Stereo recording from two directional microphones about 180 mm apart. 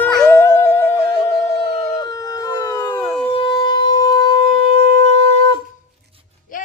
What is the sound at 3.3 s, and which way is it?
Shofar, 30° left (ahead or behind).